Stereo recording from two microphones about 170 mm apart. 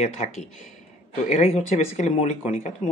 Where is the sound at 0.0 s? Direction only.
40° left (ahead or behind).